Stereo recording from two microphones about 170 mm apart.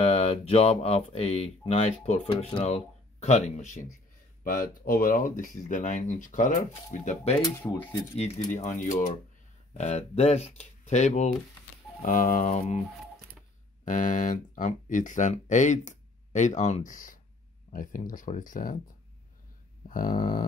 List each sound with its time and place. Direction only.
0.0 s speech: 35° left (ahead or behind)
7.5 s speech: 15° left (ahead or behind)
8.5 s speech: 45° left (ahead or behind)
12.0 s speech: 55° left (ahead or behind)
13.8 s speech: 50° left (ahead or behind)
19.9 s speech: 55° left (ahead or behind)